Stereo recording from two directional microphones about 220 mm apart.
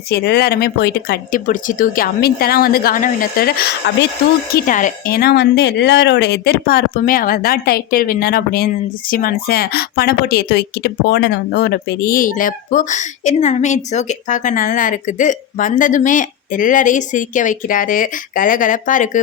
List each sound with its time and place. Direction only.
0.1 s speech: 45° left (ahead or behind)
4.5 s speech: 35° left (ahead or behind)